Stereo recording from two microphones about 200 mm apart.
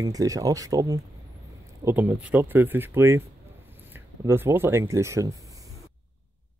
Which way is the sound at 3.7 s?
10° right (ahead or behind).